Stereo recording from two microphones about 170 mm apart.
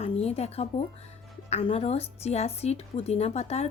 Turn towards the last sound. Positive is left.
turn(degrees=40)  # may be behind; listen again after turning